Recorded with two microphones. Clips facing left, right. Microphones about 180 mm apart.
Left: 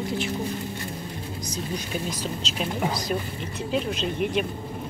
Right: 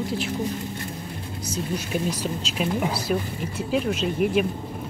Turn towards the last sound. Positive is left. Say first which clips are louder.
# right 3 dB
turn(degrees=-5)  # may be behind; listen again after turning